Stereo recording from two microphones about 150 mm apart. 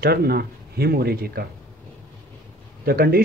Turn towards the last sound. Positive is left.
turn(degrees=-90)